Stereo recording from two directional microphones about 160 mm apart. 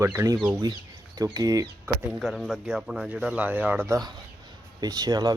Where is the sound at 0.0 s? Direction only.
15° right (ahead or behind).